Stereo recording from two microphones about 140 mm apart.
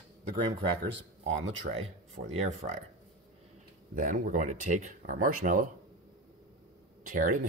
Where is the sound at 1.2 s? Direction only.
50° right (ahead or behind).